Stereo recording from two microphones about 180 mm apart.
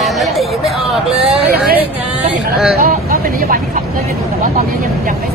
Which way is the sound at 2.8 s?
50° right (ahead or behind).